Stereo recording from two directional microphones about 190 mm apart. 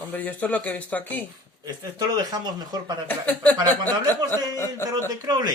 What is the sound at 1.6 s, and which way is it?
Speech, 20° right (ahead or behind).